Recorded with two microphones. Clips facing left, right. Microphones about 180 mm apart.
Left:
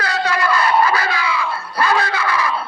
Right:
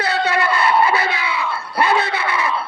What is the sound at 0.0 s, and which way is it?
Crowd, 25° right (ahead or behind).